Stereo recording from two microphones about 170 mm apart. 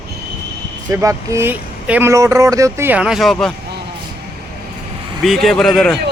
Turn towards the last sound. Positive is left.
turn(degrees=5)  # may be behind; listen again after turning